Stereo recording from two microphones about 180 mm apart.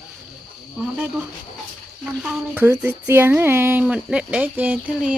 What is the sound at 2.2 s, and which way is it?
Speech, 5° right (ahead or behind).